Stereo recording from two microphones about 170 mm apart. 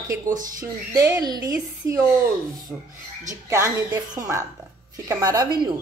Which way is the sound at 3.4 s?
15° right (ahead or behind).